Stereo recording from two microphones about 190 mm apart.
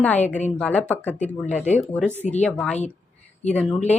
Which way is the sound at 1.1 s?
40° left (ahead or behind).